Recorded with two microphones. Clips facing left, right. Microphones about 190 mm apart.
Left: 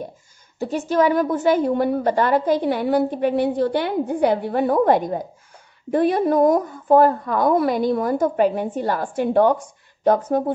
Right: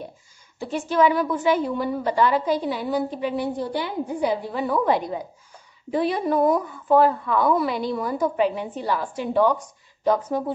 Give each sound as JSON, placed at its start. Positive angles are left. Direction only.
{"t": 0.6, "sound": "a woman's voice", "side_deg": 40}